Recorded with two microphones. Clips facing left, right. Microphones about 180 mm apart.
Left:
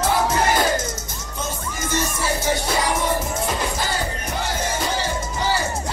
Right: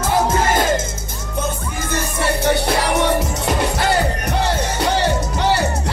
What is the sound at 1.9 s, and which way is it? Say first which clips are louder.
Music: right 3 dB; 65° right (ahead or behind).